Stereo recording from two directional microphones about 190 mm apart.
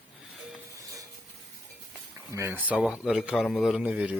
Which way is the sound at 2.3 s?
15° right (ahead or behind).